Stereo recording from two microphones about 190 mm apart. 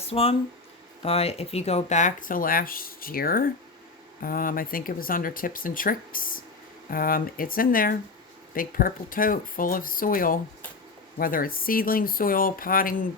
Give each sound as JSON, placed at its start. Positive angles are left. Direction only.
{"t": 0.0, "sound": "speech", "side_deg": 30}